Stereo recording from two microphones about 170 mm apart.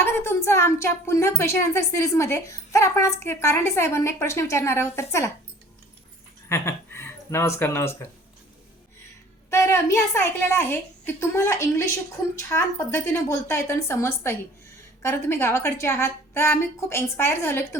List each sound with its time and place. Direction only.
0.0 s speech: 15° left (ahead or behind)
6.5 s speech: 15° left (ahead or behind)
9.5 s speech: 15° left (ahead or behind)